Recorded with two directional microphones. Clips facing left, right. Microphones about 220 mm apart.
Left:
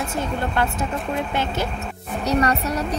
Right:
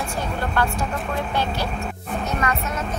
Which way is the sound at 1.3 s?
20° left (ahead or behind).